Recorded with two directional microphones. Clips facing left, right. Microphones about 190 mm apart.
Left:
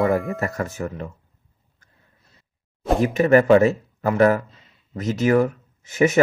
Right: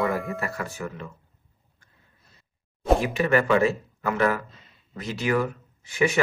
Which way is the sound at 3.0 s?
40° left (ahead or behind).